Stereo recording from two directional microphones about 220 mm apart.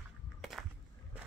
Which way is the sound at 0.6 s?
Centre (ahead or behind).